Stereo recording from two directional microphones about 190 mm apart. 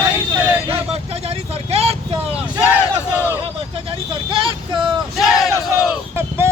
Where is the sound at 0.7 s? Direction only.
30° right (ahead or behind).